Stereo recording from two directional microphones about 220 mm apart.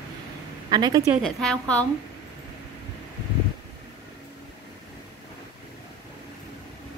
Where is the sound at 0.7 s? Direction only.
20° right (ahead or behind).